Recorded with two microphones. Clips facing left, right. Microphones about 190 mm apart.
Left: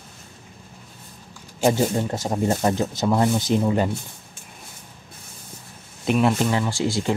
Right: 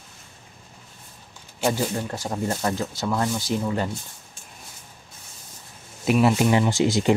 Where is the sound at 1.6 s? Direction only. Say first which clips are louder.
Left 4 dB; 25° left (ahead or behind).